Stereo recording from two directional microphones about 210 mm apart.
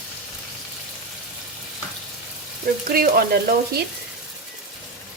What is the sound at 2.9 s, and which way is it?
Speech, 45° right (ahead or behind).